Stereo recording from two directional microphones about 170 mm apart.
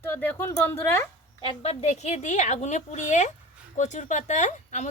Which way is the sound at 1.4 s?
35° left (ahead or behind).